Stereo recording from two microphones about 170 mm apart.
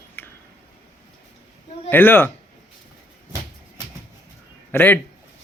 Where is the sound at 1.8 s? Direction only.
10° left (ahead or behind).